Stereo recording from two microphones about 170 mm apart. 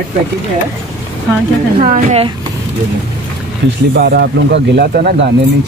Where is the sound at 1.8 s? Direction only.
45° right (ahead or behind).